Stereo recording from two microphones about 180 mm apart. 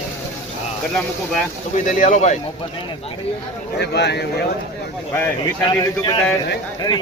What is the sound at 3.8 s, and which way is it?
Speech, 65° left (ahead or behind).